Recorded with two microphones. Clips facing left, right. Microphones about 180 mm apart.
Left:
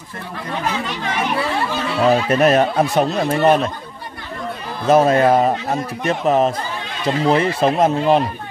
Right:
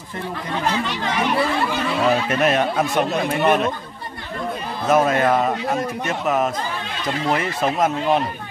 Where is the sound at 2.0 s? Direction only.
35° left (ahead or behind).